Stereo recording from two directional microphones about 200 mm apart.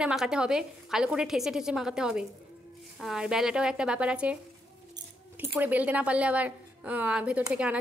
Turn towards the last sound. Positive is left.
turn(degrees=-5)  # may be behind; listen again after turning